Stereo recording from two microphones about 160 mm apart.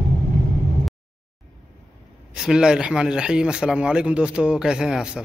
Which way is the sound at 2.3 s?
5° right (ahead or behind).